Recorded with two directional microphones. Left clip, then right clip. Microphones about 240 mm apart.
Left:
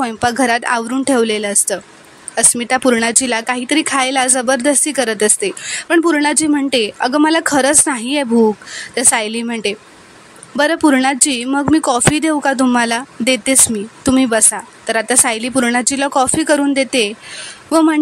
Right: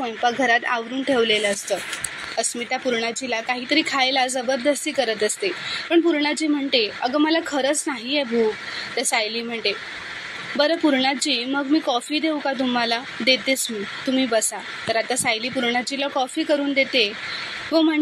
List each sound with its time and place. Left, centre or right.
0.0 s speech: left